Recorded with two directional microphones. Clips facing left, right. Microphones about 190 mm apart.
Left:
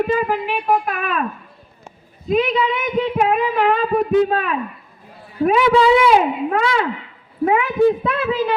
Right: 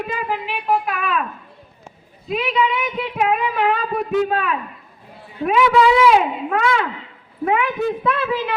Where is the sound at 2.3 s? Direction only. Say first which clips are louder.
Left 3 dB; 40° left (ahead or behind).